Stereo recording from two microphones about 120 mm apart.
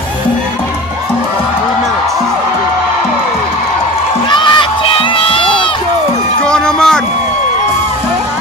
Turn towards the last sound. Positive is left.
turn(degrees=5)  # may be behind; listen again after turning